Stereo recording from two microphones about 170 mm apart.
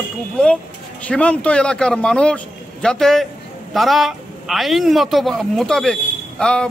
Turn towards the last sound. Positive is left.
turn(degrees=5)  # may be behind; listen again after turning